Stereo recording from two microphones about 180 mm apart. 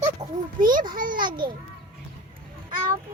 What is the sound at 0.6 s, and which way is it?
Speech, 50° right (ahead or behind).